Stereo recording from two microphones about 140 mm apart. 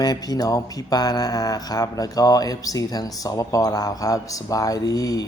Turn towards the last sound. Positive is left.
turn(degrees=25)  # may be behind; listen again after turning